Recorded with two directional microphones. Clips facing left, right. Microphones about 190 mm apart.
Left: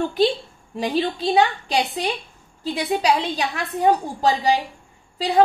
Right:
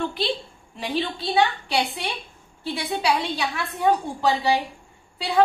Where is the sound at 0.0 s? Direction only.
45° left (ahead or behind).